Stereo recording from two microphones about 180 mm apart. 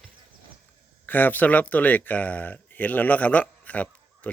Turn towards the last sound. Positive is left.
turn(degrees=10)  # may be behind; listen again after turning